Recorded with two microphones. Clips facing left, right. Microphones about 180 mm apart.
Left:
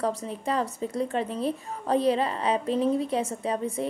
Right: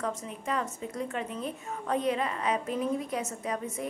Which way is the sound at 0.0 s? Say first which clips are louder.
Left 6 dB; 35° left (ahead or behind).